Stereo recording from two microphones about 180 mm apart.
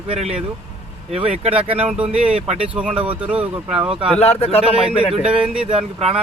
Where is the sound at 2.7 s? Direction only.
5° right (ahead or behind).